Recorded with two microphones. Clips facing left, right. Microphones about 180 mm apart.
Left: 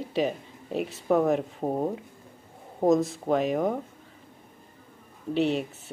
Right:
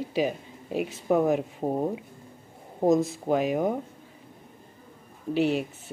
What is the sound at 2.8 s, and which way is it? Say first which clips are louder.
Speech: even; centre (ahead or behind).